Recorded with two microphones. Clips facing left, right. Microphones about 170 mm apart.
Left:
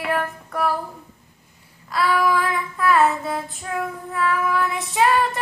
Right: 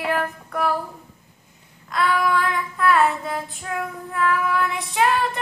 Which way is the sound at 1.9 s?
5° left (ahead or behind).